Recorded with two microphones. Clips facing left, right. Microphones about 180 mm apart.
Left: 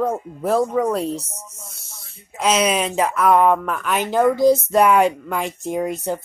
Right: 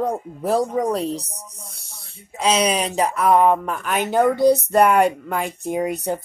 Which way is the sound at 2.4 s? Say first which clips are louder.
Left 1 dB; 30° right (ahead or behind).